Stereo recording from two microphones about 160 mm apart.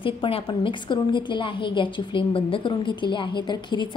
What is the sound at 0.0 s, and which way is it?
A woman's voice, 35° left (ahead or behind).